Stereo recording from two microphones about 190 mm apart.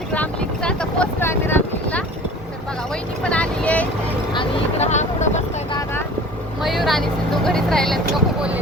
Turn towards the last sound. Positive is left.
turn(degrees=0)  # may be behind; listen again after turning